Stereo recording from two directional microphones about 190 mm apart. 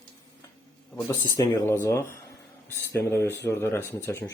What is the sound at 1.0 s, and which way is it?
Speech, 20° left (ahead or behind).